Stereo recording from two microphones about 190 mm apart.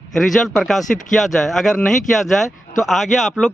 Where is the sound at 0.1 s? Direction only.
Centre (ahead or behind).